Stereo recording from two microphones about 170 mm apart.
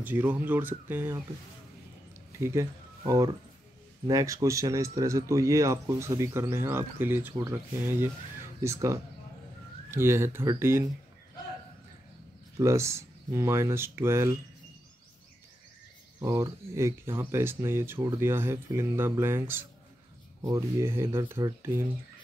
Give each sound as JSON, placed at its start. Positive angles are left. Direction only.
{"t": 0.0, "sound": "speech", "side_deg": -10}
{"t": 2.3, "sound": "speech", "side_deg": -15}
{"t": 12.5, "sound": "speech", "side_deg": -15}
{"t": 16.2, "sound": "speech", "side_deg": -15}